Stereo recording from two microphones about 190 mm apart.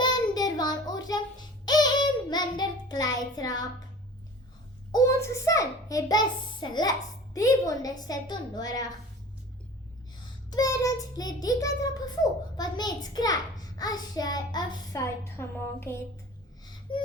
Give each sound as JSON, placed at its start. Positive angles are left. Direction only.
{"t": 0.0, "sound": "child singing", "side_deg": 20}
{"t": 3.3, "sound": "a child's voice", "side_deg": 20}
{"t": 4.9, "sound": "a child's voice", "side_deg": 20}
{"t": 10.5, "sound": "a child's voice", "side_deg": 15}
{"t": 16.9, "sound": "a child's voice", "side_deg": 25}